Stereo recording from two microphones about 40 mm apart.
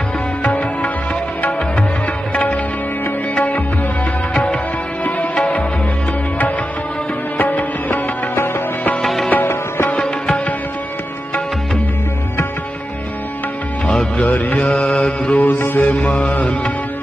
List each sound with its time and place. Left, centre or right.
0.4 s music: left
2.3 s sitar: left
3.3 s music: left
5.3 s music: left
7.3 s music: left
9.0 s music: centre
9.4 s music: left
9.9 s music: left
13.8 s music: left
14.2 s music: left
14.6 s mantra: left
15.7 s mantra: left
16.0 s mantra: left